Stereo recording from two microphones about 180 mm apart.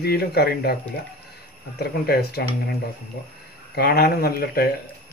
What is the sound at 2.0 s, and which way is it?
Speech, 60° left (ahead or behind).